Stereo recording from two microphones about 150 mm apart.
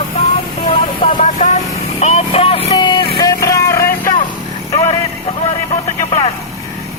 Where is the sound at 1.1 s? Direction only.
55° left (ahead or behind).